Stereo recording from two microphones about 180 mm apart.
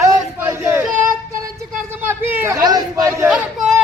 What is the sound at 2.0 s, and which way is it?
Speech, 10° right (ahead or behind).